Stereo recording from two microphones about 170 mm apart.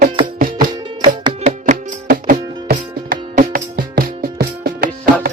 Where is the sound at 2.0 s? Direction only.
60° right (ahead or behind).